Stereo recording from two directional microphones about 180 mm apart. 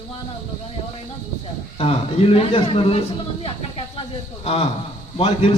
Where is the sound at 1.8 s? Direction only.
30° left (ahead or behind).